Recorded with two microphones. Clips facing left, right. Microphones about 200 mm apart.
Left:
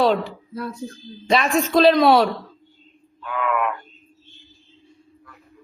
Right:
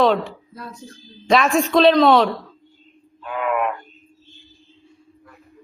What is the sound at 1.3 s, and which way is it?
A man's voice, centre (ahead or behind).